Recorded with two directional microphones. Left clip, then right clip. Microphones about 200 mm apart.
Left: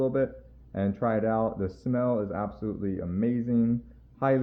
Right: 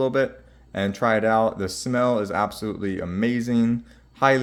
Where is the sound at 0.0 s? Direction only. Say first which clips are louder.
Right 5 dB; 20° right (ahead or behind).